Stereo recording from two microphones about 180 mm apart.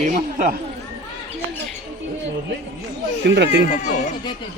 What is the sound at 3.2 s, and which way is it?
Speech, 70° right (ahead or behind).